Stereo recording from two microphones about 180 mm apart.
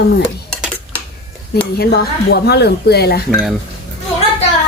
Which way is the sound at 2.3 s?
65° left (ahead or behind).